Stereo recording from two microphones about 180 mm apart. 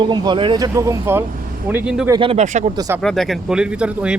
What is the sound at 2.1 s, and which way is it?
Speech, 30° right (ahead or behind).